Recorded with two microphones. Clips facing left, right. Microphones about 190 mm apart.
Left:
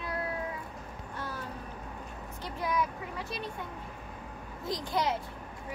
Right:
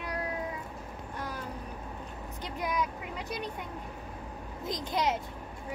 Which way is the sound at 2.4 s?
20° right (ahead or behind).